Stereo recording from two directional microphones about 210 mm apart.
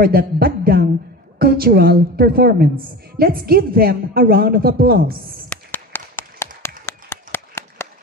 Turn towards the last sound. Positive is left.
turn(degrees=10)  # may be behind; listen again after turning